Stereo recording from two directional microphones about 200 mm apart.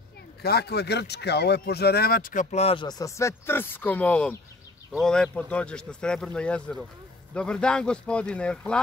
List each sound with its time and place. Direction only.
0.4 s speech: 50° left (ahead or behind); by 8.8 s 5° left (ahead or behind)